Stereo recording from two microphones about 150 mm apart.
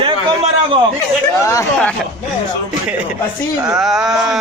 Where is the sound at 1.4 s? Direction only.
20° left (ahead or behind).